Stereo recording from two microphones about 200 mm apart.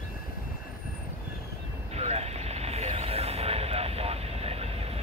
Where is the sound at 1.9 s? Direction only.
30° right (ahead or behind).